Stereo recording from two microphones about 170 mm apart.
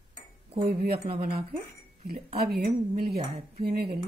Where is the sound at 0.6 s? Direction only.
65° right (ahead or behind).